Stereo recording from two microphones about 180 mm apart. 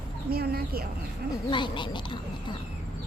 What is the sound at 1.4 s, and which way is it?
Speech, 25° left (ahead or behind).